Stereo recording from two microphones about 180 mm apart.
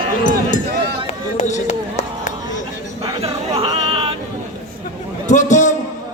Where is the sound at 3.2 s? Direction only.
35° right (ahead or behind).